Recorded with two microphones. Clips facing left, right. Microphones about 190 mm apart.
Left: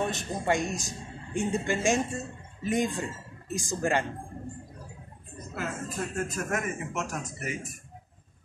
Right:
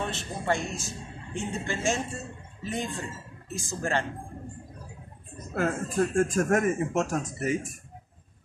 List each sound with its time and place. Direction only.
0.0 s speech: 15° left (ahead or behind)
5.5 s speech: 50° right (ahead or behind)